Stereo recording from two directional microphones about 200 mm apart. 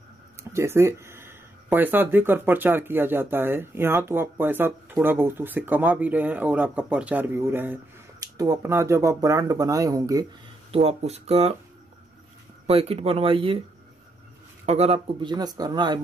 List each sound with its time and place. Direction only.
0.4 s speech: 15° right (ahead or behind)
10.7 s speech: 30° right (ahead or behind)
12.6 s speech: 30° right (ahead or behind)
14.7 s speech: 30° right (ahead or behind)